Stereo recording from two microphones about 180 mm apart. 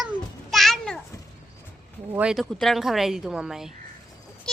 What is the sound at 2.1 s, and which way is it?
Speech, 5° right (ahead or behind).